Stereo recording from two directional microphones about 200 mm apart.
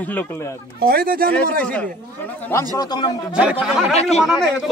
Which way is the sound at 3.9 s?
30° left (ahead or behind).